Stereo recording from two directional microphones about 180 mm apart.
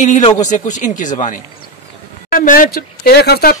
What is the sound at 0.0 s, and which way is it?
A man's voice, 40° left (ahead or behind).